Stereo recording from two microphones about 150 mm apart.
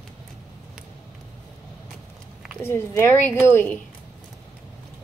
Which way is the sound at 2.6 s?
15° left (ahead or behind).